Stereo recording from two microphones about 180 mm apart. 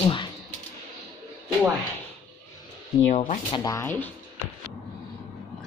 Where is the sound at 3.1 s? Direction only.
45° left (ahead or behind).